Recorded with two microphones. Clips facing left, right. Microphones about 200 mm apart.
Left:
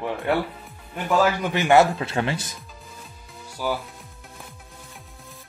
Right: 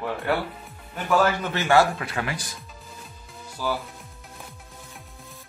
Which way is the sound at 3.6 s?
15° left (ahead or behind).